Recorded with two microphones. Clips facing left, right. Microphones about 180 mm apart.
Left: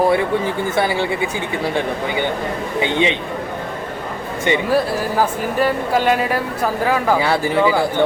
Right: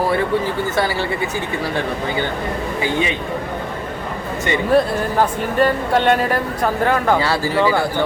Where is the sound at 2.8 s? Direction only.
25° left (ahead or behind).